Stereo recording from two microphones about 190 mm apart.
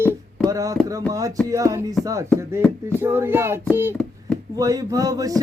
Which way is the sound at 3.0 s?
10° right (ahead or behind).